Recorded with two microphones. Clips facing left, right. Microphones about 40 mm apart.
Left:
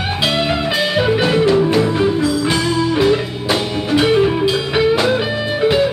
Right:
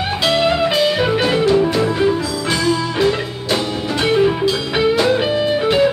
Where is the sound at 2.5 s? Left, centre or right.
Centre.